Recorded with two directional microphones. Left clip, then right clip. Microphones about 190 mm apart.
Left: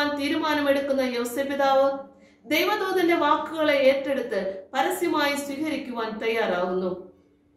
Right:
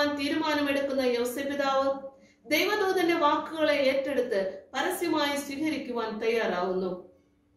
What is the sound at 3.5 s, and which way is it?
Speech, 15° left (ahead or behind).